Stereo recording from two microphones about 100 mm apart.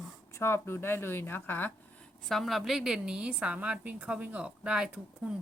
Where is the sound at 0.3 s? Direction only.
25° left (ahead or behind).